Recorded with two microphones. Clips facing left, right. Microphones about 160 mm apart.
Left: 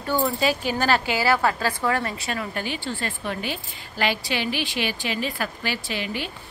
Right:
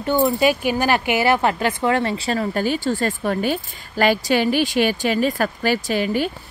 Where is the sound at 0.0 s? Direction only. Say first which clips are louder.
Right 6 dB; 20° right (ahead or behind).